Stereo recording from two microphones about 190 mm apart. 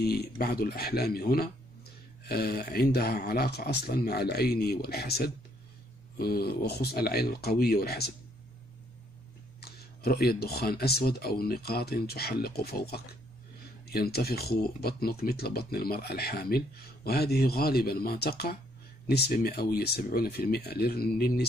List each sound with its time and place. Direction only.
0.0 s speech: 55° left (ahead or behind)
9.6 s speech: 55° left (ahead or behind)